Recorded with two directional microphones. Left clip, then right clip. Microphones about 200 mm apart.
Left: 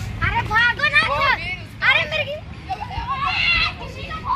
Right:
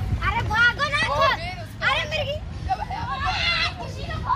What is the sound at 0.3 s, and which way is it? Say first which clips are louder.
Vehicle: left 2 dB; 40° right (ahead or behind).